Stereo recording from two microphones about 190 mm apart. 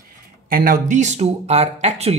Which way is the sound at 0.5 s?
50° right (ahead or behind).